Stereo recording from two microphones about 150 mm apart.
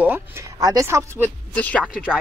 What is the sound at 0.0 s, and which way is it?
Speech, 15° right (ahead or behind).